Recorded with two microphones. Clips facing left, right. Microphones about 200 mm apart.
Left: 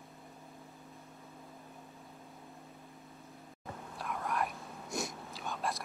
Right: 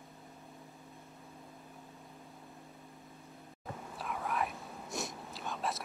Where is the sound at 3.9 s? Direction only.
Centre (ahead or behind).